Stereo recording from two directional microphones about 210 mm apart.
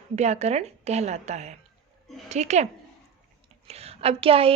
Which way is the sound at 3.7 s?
30° right (ahead or behind).